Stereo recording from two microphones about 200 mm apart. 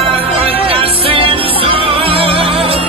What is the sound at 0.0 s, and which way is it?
Music, 30° right (ahead or behind).